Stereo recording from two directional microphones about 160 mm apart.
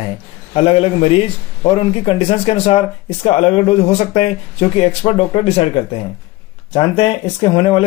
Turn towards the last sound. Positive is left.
turn(degrees=35)  # may be behind; listen again after turning